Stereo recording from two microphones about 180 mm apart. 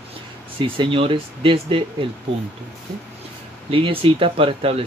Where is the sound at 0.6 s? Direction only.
30° right (ahead or behind).